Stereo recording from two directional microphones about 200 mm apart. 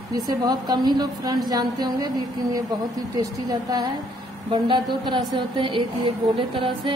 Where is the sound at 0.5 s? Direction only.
20° right (ahead or behind).